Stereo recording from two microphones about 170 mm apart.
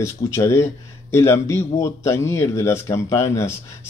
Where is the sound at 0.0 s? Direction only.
15° left (ahead or behind).